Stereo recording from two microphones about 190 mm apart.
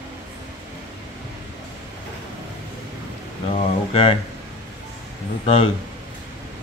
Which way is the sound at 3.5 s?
30° left (ahead or behind).